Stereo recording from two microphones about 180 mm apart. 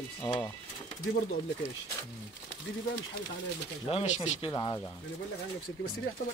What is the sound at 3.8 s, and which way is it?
Speech, 35° left (ahead or behind).